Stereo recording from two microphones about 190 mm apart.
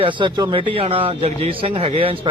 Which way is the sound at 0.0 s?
25° right (ahead or behind).